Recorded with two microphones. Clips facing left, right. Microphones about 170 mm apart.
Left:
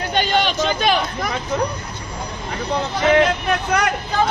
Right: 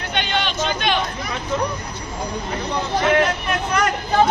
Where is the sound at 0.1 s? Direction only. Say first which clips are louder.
Left 4 dB; 40° left (ahead or behind).